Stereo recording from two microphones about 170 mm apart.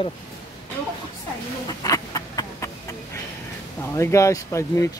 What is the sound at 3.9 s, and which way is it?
Speech, 15° left (ahead or behind).